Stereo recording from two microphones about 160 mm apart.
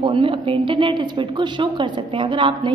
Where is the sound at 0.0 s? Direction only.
30° right (ahead or behind).